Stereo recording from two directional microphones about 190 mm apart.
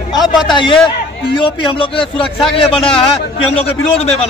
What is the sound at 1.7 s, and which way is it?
Speech, 25° left (ahead or behind).